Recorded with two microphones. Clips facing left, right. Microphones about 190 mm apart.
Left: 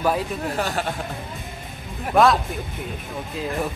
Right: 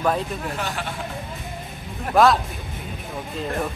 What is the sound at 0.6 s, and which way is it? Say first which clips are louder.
Speech: left 4 dB; 40° left (ahead or behind).